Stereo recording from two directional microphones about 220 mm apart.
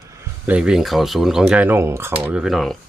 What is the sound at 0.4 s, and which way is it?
Speech, 5° right (ahead or behind).